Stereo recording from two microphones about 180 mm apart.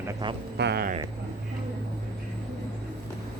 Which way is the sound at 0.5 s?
65° right (ahead or behind).